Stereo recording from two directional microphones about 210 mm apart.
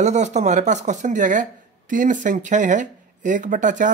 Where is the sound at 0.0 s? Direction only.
35° right (ahead or behind).